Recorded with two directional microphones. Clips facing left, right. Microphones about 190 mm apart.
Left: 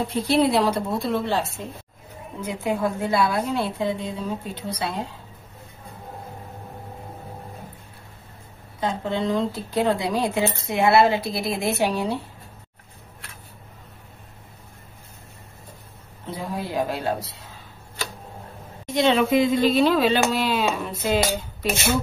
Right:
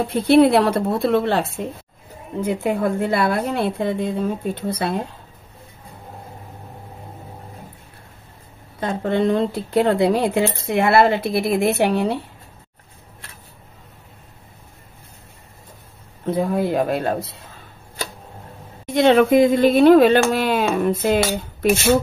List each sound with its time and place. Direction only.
0.1 s a woman's voice: 60° right (ahead or behind)
8.7 s a woman's voice: 55° right (ahead or behind)
16.3 s a woman's voice: 55° right (ahead or behind)
18.9 s speech: 55° right (ahead or behind)